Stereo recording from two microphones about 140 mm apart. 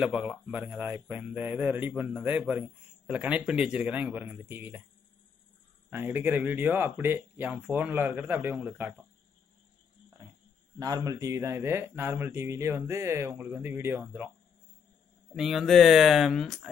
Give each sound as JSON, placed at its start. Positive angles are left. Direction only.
{"t": 0.0, "sound": "speech", "side_deg": -5}
{"t": 5.9, "sound": "speech", "side_deg": -15}
{"t": 10.8, "sound": "speech", "side_deg": -25}
{"t": 15.3, "sound": "speech", "side_deg": 0}